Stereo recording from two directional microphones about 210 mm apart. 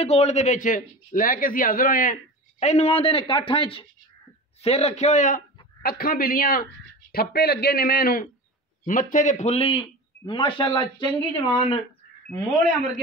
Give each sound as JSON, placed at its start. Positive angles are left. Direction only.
{"t": 0.0, "sound": "a man's voice", "side_deg": 30}